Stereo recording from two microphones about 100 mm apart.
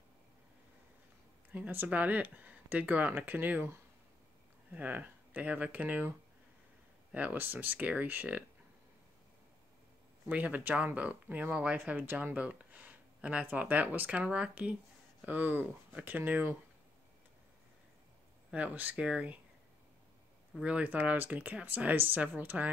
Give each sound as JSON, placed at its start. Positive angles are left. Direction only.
{"t": 1.5, "sound": "speech", "side_deg": -20}
{"t": 10.2, "sound": "speech", "side_deg": -15}
{"t": 18.5, "sound": "speech", "side_deg": -15}
{"t": 20.6, "sound": "speech", "side_deg": -15}